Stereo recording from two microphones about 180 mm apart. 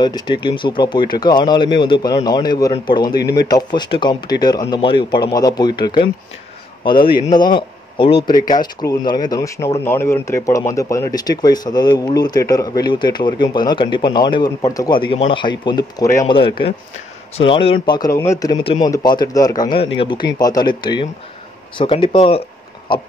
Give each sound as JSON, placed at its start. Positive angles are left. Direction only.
{"t": 0.0, "sound": "speech", "side_deg": 25}
{"t": 7.0, "sound": "a man's voice", "side_deg": 55}
{"t": 7.2, "sound": "speech", "side_deg": 25}